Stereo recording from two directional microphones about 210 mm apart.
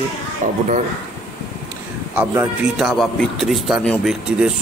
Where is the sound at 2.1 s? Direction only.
5° right (ahead or behind).